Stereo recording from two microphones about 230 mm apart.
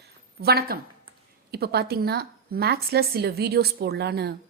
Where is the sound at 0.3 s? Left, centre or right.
Right.